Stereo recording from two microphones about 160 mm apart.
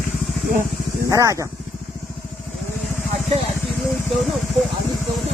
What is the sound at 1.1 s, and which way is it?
Speech, 20° right (ahead or behind).